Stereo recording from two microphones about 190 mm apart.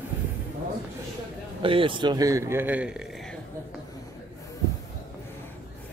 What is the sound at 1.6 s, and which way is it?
A man's voice, 25° right (ahead or behind).